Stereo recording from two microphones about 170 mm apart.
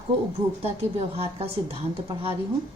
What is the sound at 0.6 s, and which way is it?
A woman's voice, 35° right (ahead or behind).